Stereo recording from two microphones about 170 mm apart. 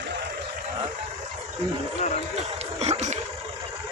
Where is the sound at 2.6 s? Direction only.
40° right (ahead or behind).